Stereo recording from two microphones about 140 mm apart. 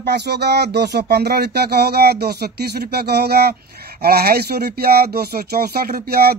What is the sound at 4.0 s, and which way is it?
Speech, 90° right.